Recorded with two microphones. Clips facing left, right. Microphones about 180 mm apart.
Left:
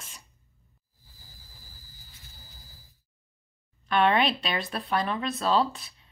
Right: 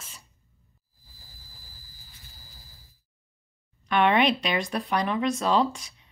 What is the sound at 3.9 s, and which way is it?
Speech, 15° right (ahead or behind).